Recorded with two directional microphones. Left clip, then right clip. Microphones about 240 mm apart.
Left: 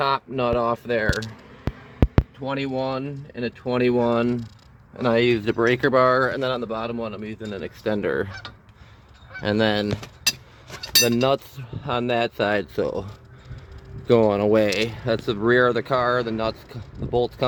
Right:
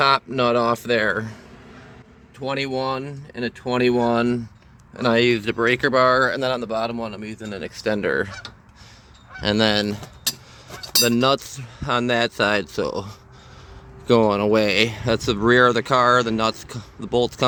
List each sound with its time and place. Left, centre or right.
0.0 s speech: centre
2.4 s speech: centre
5.3 s speech: centre
9.4 s speech: centre
14.1 s speech: centre
14.7 s speech: centre